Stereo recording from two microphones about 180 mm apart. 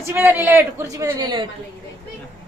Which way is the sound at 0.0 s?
15° right (ahead or behind).